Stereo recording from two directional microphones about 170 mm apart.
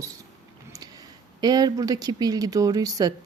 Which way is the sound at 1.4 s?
25° right (ahead or behind).